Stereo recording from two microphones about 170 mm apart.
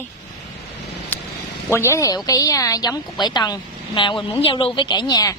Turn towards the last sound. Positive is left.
turn(degrees=25)  # may be behind; listen again after turning